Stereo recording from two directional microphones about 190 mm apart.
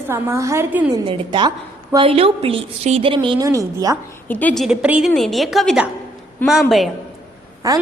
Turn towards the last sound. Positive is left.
turn(degrees=-20)  # may be behind; listen again after turning